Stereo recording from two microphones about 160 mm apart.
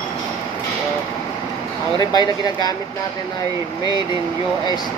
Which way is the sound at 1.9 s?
25° left (ahead or behind).